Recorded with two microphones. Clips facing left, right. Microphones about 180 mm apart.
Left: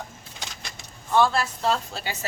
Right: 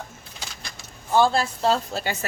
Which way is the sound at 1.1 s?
30° right (ahead or behind).